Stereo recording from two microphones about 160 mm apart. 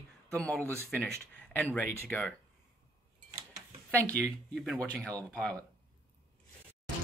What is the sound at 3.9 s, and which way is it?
Speech, 10° left (ahead or behind).